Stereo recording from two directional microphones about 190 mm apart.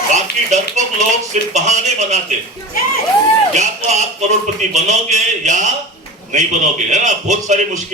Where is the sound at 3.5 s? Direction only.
40° right (ahead or behind).